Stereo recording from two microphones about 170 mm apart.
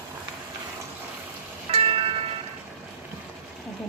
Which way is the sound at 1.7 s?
35° right (ahead or behind).